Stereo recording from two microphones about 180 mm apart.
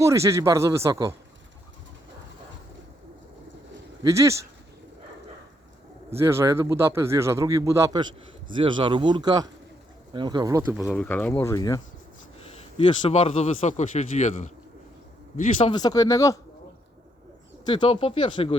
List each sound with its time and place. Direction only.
0.0 s speech: 15° right (ahead or behind)
4.0 s speech: 15° right (ahead or behind)
6.1 s speech: 15° right (ahead or behind)
10.8 s speech: 10° left (ahead or behind)
12.5 s a man's voice: 35° left (ahead or behind)
15.6 s speech: 20° left (ahead or behind)
17.7 s speech: 25° left (ahead or behind)